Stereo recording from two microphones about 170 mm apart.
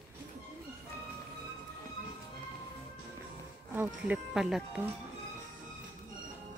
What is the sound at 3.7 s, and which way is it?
Speech, 10° right (ahead or behind).